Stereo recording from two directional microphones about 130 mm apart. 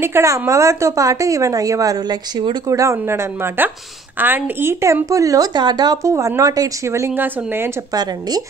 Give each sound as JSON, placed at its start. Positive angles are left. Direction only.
{"t": 0.0, "sound": "speech", "side_deg": -20}
{"t": 7.9, "sound": "speech", "side_deg": -30}